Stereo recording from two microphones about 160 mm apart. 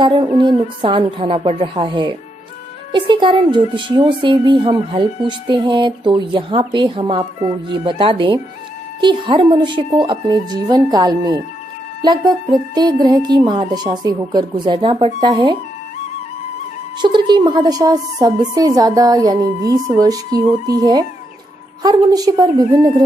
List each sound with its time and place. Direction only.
0.0 s a woman's voice: 30° right (ahead or behind)
17.0 s a woman's voice: 25° right (ahead or behind)